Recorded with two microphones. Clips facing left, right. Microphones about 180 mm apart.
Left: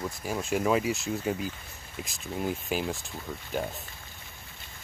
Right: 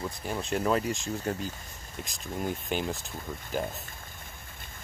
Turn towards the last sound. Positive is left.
turn(degrees=0)  # may be behind; listen again after turning